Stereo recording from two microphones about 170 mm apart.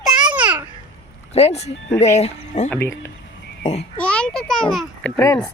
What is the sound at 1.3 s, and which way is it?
A woman's voice, 40° left (ahead or behind).